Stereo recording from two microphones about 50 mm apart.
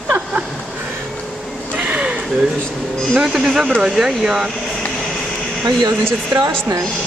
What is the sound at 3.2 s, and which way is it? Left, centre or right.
Speech, centre.